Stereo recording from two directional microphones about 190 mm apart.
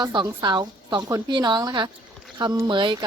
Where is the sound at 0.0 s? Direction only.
25° right (ahead or behind).